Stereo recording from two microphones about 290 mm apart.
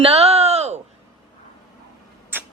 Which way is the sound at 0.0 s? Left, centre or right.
Right.